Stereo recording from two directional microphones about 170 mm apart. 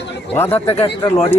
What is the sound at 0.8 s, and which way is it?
Speech, 35° left (ahead or behind).